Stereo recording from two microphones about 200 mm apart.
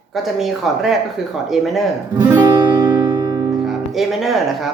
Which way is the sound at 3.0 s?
20° right (ahead or behind).